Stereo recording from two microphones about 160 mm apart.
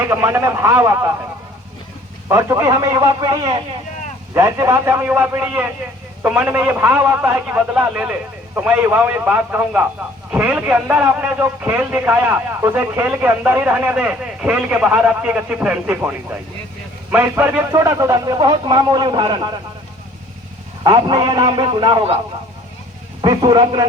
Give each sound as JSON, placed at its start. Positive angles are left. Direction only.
{"t": 0.1, "sound": "a man's voice", "side_deg": -15}
{"t": 2.3, "sound": "speech", "side_deg": -20}
{"t": 4.4, "sound": "a man's voice", "side_deg": -20}
{"t": 20.8, "sound": "speech", "side_deg": -30}
{"t": 23.2, "sound": "speech", "side_deg": -30}